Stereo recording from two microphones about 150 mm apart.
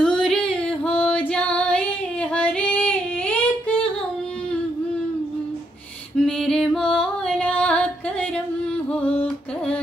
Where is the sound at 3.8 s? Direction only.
5° left (ahead or behind).